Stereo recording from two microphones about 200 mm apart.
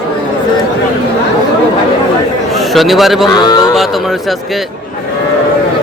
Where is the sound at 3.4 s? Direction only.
20° left (ahead or behind).